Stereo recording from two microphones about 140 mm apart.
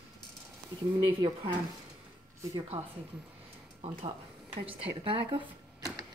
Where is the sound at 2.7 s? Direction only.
45° right (ahead or behind).